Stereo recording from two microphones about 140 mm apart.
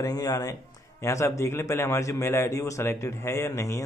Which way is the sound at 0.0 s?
25° left (ahead or behind).